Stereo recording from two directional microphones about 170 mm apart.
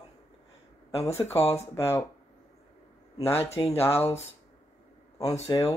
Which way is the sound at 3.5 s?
35° left (ahead or behind).